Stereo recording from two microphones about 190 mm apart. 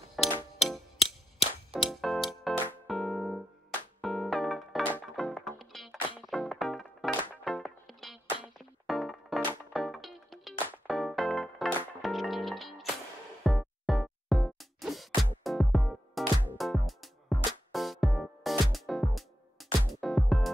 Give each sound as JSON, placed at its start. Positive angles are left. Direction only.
{"t": 0.2, "sound": "music", "side_deg": 0}
{"t": 0.9, "sound": "cap gun", "side_deg": 35}
{"t": 1.8, "sound": "music", "side_deg": 0}